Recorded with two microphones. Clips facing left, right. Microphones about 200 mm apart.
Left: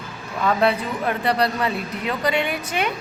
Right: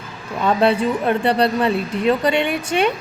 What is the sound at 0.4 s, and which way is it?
A woman's voice, 30° right (ahead or behind).